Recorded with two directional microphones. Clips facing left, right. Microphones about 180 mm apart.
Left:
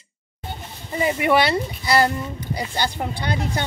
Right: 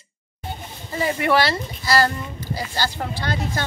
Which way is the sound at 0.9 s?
15° left (ahead or behind).